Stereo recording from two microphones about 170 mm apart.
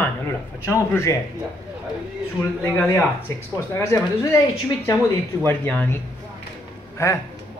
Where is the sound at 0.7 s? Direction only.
15° left (ahead or behind).